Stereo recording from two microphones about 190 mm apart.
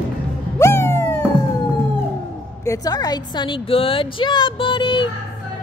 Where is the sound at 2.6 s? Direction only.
20° left (ahead or behind).